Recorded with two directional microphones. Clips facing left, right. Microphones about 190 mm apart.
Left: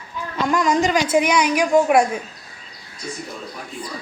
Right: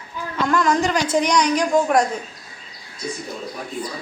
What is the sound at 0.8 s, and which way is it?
A woman's voice, 5° left (ahead or behind).